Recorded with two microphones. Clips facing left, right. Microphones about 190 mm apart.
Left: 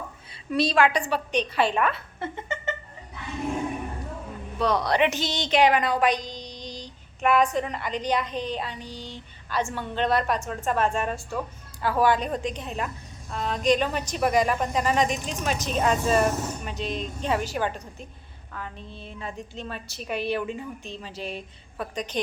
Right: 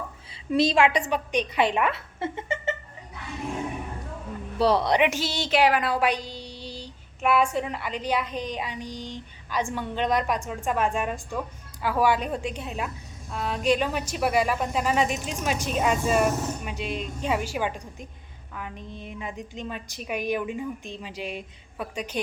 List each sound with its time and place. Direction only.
0.5 s a woman's voice: 25° right (ahead or behind)
4.5 s speech: 30° right (ahead or behind)
4.9 s a woman's voice: 10° right (ahead or behind)